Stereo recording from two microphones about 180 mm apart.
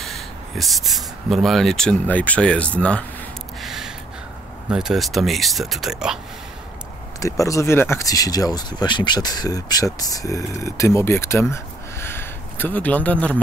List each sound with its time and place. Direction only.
0.0 s speech: centre (ahead or behind)
3.6 s gasp: centre (ahead or behind)
4.6 s speech: 5° right (ahead or behind)
7.2 s speech: 20° left (ahead or behind)